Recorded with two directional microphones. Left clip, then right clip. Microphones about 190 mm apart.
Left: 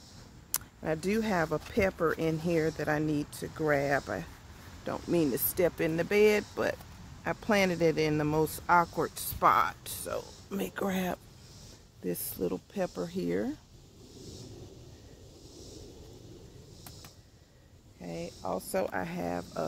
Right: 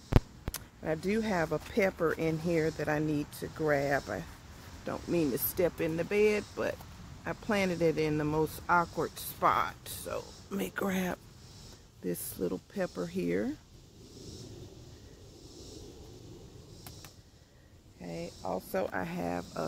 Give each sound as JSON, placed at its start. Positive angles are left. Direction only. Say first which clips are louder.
{"t": 0.5, "sound": "speech", "louder": "left 3 dB", "side_deg": 15}
{"t": 18.0, "sound": "speech", "louder": "left 1 dB", "side_deg": 10}